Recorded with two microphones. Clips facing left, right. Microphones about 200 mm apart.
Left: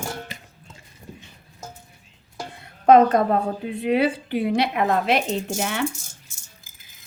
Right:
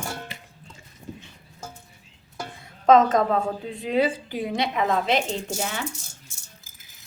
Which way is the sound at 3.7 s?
65° left (ahead or behind).